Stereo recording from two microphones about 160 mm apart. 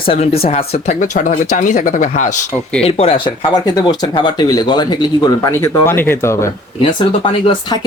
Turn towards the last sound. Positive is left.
turn(degrees=30)  # may be behind; listen again after turning